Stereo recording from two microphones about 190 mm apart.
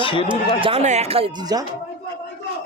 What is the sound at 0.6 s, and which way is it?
Speech, 35° right (ahead or behind).